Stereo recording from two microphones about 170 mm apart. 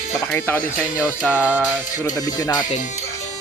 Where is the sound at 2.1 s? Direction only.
25° left (ahead or behind).